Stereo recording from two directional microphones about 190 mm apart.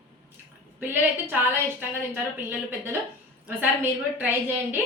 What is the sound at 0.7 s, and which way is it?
A woman's voice, 10° right (ahead or behind).